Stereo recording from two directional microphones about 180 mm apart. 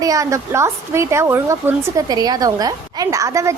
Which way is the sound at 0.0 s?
20° right (ahead or behind).